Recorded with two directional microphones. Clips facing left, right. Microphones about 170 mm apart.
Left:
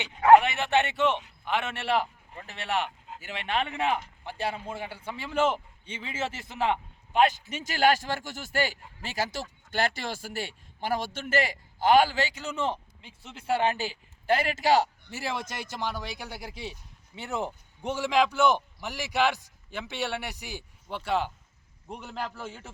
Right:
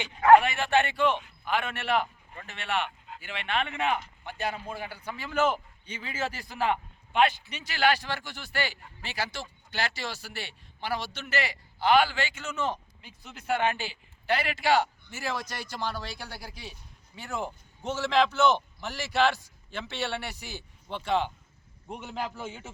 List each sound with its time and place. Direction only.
0.2 s a man's voice: 20° left (ahead or behind)
7.1 s speech: 40° left (ahead or behind)
15.1 s a man's voice: 30° left (ahead or behind); by 22.7 s centre (ahead or behind)